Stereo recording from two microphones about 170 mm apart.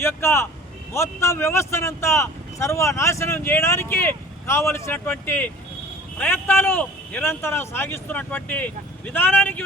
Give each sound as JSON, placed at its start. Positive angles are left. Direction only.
{"t": 0.0, "sound": "speech", "side_deg": 15}